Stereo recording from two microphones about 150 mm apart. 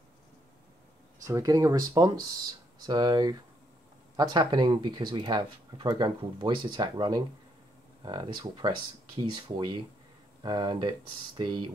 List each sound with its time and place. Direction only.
1.2 s speech: 25° right (ahead or behind)